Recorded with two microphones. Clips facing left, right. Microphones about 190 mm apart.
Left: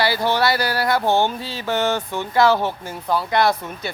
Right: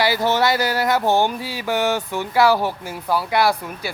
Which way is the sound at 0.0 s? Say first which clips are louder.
Right 1 dB; 15° right (ahead or behind).